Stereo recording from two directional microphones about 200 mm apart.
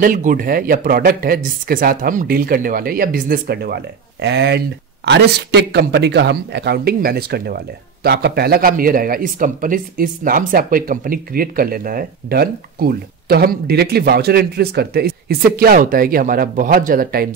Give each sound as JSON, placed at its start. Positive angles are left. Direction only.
{"t": 0.0, "sound": "speech", "side_deg": -40}